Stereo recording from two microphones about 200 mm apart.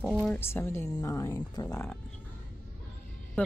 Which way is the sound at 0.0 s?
Centre (ahead or behind).